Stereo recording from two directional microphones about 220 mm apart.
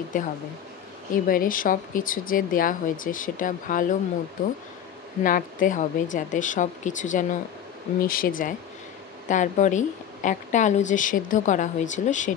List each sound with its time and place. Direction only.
0.1 s a woman's voice: 35° left (ahead or behind)
5.2 s a woman's voice: 40° left (ahead or behind)